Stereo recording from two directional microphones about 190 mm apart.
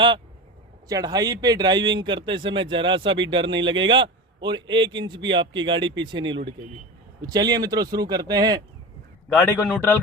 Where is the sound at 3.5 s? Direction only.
80° right.